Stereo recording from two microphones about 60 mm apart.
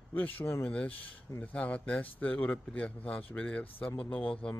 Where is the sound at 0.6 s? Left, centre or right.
Centre.